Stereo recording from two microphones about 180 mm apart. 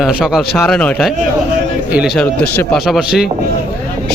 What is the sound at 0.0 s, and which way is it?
A man's voice, 5° right (ahead or behind).